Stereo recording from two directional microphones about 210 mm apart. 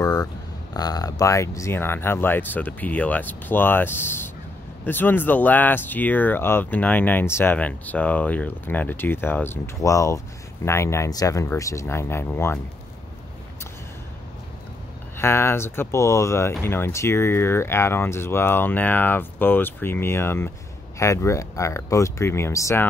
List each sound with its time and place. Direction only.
0.0 s a sound: 20° left (ahead or behind)
0.7 s speech: 20° left (ahead or behind)
15.1 s speech: 10° left (ahead or behind)